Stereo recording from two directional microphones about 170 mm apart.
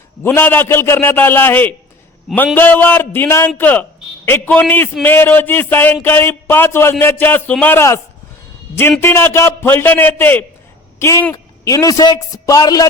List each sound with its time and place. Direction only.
0.2 s a man's voice: 10° left (ahead or behind)